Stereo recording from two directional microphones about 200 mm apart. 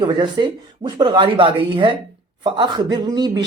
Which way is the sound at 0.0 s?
20° right (ahead or behind).